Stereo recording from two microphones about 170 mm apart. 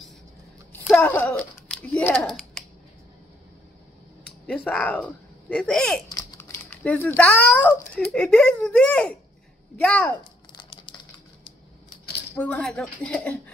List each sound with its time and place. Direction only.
0.8 s a child's voice: 5° left (ahead or behind)
4.5 s speech: 5° left (ahead or behind)
6.0 s a child's voice: 15° left (ahead or behind)
10.5 s typing: 30° left (ahead or behind)
12.4 s a woman's voice: 10° left (ahead or behind)